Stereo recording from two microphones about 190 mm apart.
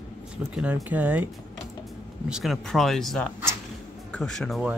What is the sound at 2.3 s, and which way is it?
Speech, centre (ahead or behind).